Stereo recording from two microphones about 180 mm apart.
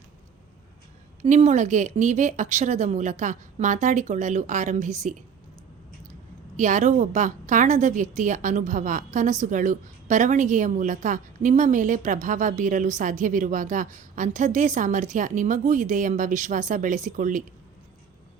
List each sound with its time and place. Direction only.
1.2 s a woman's voice: 40° right (ahead or behind)
6.6 s a woman's voice: 45° right (ahead or behind)